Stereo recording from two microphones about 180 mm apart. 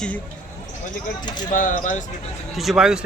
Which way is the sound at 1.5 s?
45° left (ahead or behind).